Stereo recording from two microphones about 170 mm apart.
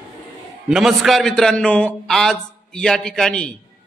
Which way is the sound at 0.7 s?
Centre (ahead or behind).